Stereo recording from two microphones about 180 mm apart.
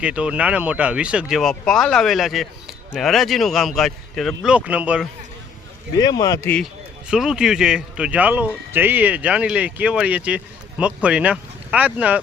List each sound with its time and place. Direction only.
0.0 s speech: 5° right (ahead or behind)
6.0 s speech: 20° left (ahead or behind)
7.1 s speech: 5° right (ahead or behind)